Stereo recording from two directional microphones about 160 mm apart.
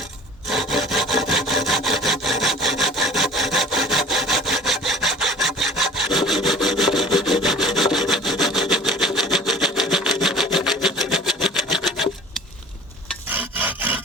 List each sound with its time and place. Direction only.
0.5 s sawing: centre (ahead or behind)
13.3 s rub: 10° right (ahead or behind)